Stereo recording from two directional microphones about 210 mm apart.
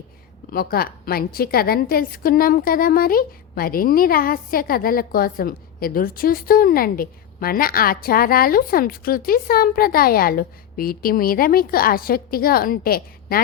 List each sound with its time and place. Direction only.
0.5 s a woman's voice: 45° left (ahead or behind)